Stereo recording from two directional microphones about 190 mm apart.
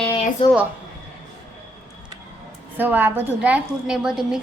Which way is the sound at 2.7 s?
10° right (ahead or behind).